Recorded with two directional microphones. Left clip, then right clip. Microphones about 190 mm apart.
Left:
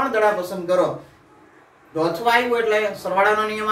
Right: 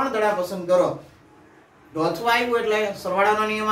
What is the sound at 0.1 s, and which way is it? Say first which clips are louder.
Speech: left 3 dB; 15° left (ahead or behind).